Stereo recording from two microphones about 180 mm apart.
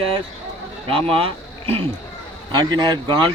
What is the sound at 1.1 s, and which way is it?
A man's voice, 30° right (ahead or behind).